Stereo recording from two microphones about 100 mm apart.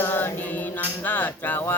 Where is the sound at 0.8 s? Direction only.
20° left (ahead or behind).